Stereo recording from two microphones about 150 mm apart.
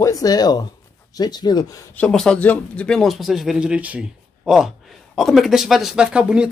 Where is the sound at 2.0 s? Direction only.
5° left (ahead or behind).